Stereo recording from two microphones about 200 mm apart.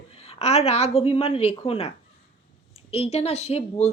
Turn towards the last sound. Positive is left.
turn(degrees=30)  # may be behind; listen again after turning